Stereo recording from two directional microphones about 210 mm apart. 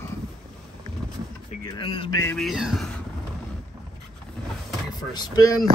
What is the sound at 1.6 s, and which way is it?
Speech, 25° left (ahead or behind).